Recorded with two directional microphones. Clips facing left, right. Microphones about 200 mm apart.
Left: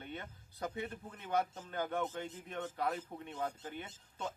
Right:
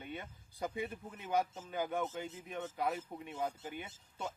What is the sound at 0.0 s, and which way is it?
Speech, 15° right (ahead or behind).